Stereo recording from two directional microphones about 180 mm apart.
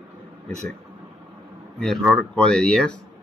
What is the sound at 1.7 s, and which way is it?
Speech, 5° left (ahead or behind).